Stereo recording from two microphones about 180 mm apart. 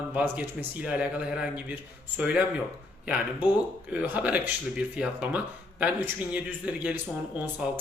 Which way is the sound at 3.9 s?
5° right (ahead or behind).